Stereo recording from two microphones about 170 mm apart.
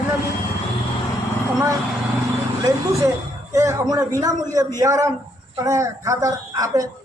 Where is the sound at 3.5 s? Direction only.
20° right (ahead or behind).